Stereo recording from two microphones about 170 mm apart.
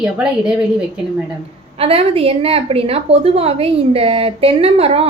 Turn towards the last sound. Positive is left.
turn(degrees=-35)  # may be behind; listen again after turning